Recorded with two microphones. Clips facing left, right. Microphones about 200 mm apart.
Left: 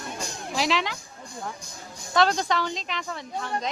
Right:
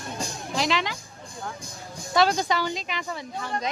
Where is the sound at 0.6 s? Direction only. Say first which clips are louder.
Even; centre (ahead or behind).